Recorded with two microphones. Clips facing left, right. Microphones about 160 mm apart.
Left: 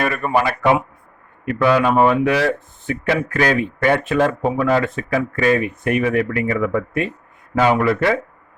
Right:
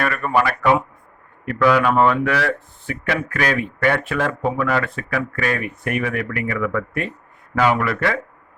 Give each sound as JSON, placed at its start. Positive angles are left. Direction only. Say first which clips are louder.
{"t": 0.0, "sound": "speech", "louder": "left 1 dB", "side_deg": 15}